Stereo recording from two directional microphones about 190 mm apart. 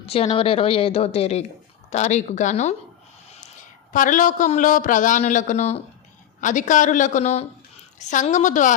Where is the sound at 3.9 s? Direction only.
45° left (ahead or behind).